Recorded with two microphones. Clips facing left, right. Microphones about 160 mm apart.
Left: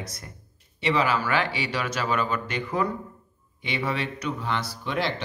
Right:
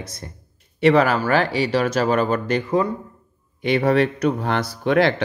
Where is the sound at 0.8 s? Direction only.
50° right (ahead or behind).